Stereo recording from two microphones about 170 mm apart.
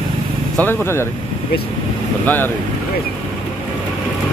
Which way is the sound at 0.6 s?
15° left (ahead or behind).